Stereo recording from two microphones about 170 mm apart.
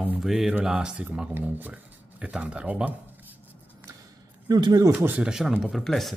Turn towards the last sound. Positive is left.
turn(degrees=0)  # may be behind; listen again after turning